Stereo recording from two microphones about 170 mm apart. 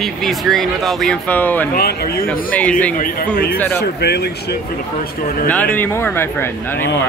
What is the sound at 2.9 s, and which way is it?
Speech, 55° left (ahead or behind).